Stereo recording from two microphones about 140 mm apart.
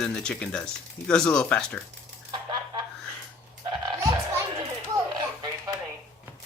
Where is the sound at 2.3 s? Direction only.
30° right (ahead or behind).